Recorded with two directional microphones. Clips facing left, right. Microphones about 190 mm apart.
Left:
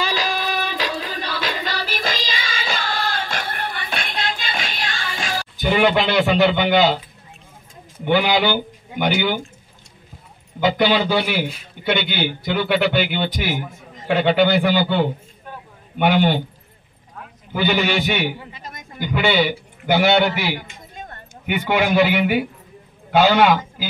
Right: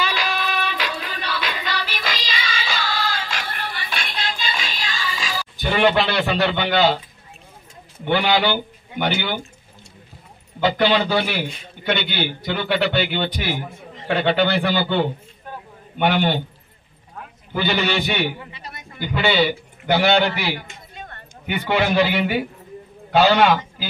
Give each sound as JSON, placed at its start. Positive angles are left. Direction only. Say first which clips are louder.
{"t": 0.0, "sound": "music", "louder": "left 1 dB", "side_deg": 40}
{"t": 5.6, "sound": "a man's voice", "louder": "left 1 dB", "side_deg": 10}
{"t": 8.0, "sound": "speech", "louder": "left 1 dB", "side_deg": 10}
{"t": 10.6, "sound": "a man's voice", "louder": "left 1 dB", "side_deg": 10}
{"t": 17.5, "sound": "a man's voice", "louder": "left 2 dB", "side_deg": 10}
{"t": 18.5, "sound": "a sound", "louder": "left 1 dB", "side_deg": 45}
{"t": 18.9, "sound": "a man's voice", "louder": "left 1 dB", "side_deg": 10}
{"t": 20.9, "sound": "a sound", "louder": "left 2 dB", "side_deg": 45}
{"t": 21.5, "sound": "a man's voice", "louder": "left 1 dB", "side_deg": 10}